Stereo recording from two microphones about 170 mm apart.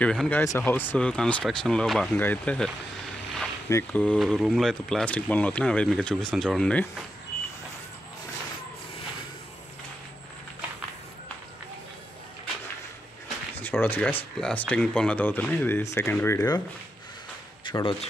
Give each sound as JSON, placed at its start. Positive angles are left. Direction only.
{"t": 0.0, "sound": "speech", "side_deg": 5}
{"t": 13.6, "sound": "speech", "side_deg": 10}
{"t": 17.6, "sound": "speech", "side_deg": 30}